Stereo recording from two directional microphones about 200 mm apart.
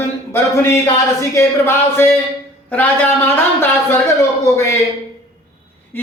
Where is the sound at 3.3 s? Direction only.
10° left (ahead or behind).